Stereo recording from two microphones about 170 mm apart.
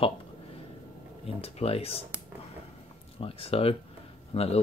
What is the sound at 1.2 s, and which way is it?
Speech, 35° left (ahead or behind).